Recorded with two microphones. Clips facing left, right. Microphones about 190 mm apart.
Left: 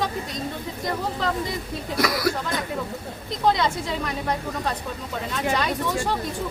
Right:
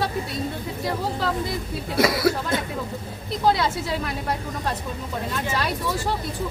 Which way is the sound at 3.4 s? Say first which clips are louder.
Even; 5° right (ahead or behind).